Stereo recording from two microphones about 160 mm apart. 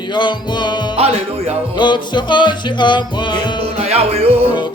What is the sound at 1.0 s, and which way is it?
Music, 40° right (ahead or behind).